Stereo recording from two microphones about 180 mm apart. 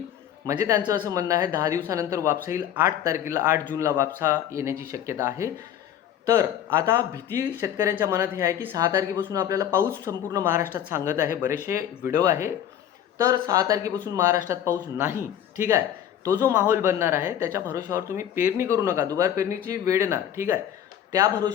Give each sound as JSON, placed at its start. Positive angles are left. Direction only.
{"t": 0.4, "sound": "speech", "side_deg": -15}
{"t": 16.2, "sound": "speech", "side_deg": -20}